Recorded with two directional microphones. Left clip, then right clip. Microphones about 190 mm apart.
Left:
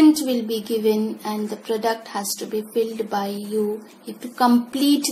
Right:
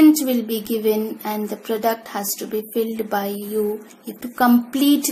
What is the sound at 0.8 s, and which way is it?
A woman's voice, 20° right (ahead or behind).